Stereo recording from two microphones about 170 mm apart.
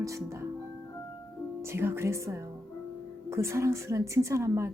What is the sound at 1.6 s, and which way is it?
A woman's voice, 15° right (ahead or behind).